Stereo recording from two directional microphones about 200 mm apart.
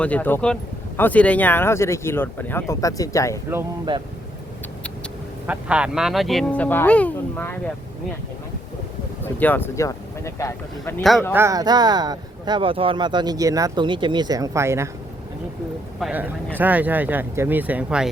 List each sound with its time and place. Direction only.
0.0 s speech: 10° left (ahead or behind)
5.5 s speech: 5° right (ahead or behind)
9.2 s speech: 10° left (ahead or behind)
11.3 s speech: 15° right (ahead or behind)
16.0 s a man's voice: centre (ahead or behind)